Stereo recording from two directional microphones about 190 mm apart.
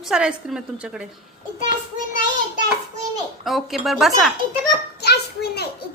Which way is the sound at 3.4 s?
Centre (ahead or behind).